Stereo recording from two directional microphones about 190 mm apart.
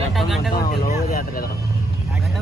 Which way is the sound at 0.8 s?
50° left (ahead or behind).